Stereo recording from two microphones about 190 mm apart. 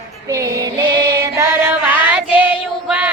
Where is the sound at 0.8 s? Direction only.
65° right (ahead or behind).